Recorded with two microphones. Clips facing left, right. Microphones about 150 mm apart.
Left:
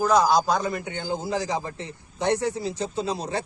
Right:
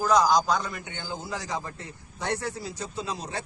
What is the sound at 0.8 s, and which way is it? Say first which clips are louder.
Speech: left 7 dB; 35° left (ahead or behind).